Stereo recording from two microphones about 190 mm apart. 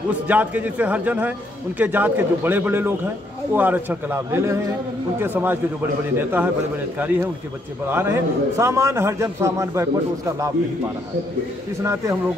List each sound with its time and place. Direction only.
0.3 s a man's voice: 10° right (ahead or behind)
7.9 s a man's voice: 10° right (ahead or behind)
11.8 s a man's voice: 15° right (ahead or behind)